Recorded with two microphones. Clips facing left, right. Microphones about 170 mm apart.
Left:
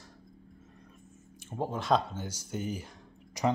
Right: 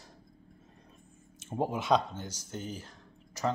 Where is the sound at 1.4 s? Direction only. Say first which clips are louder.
Right 2 dB; 15° right (ahead or behind).